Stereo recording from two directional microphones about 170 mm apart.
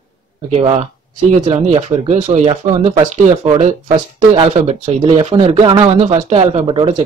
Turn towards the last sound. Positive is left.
turn(degrees=-30)  # may be behind; listen again after turning